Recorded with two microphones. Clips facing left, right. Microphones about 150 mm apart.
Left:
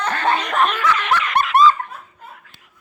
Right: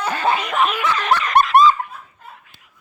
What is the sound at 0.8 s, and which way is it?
Snicker, 35° right (ahead or behind).